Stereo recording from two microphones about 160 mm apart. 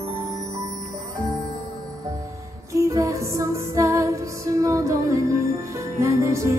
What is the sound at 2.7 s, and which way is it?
Music, 20° right (ahead or behind).